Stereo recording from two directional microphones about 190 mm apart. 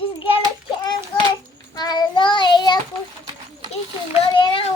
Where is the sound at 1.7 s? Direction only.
20° left (ahead or behind).